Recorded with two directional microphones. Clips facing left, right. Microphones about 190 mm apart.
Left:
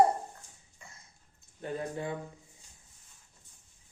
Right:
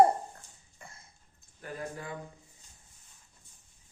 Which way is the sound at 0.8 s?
55° right (ahead or behind).